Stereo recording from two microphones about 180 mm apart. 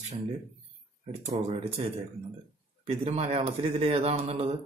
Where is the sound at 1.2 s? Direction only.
35° right (ahead or behind).